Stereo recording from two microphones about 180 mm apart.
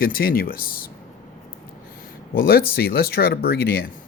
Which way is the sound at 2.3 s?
60° left (ahead or behind).